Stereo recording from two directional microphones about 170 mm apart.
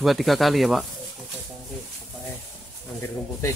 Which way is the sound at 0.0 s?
Centre (ahead or behind).